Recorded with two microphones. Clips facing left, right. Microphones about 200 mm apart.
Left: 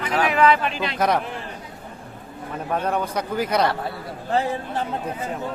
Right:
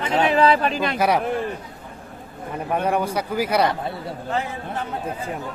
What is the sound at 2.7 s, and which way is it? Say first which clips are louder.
A man's voice: right 2 dB; 10° right (ahead or behind).